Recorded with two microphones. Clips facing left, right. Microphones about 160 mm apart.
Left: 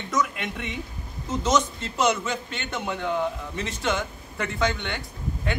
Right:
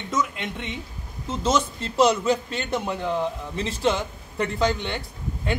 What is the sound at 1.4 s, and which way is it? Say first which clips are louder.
A man's voice: right 1 dB; 30° right (ahead or behind).